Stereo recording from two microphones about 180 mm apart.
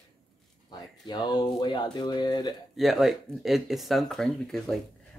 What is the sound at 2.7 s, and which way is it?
Speech, centre (ahead or behind).